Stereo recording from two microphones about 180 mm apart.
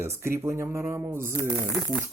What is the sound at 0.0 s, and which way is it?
Speech, 15° right (ahead or behind).